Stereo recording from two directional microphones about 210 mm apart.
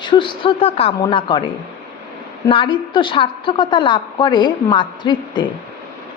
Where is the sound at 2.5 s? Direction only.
25° left (ahead or behind).